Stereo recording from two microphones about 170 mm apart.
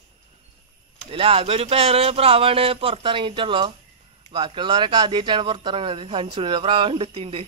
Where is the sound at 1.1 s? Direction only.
35° right (ahead or behind).